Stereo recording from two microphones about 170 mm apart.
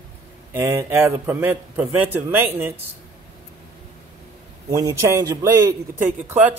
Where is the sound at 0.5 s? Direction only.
15° right (ahead or behind).